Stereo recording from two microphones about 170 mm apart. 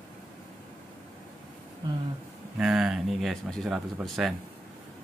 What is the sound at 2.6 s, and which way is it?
Speech, 5° right (ahead or behind).